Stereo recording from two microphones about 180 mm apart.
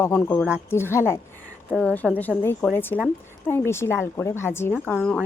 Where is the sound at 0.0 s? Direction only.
10° left (ahead or behind).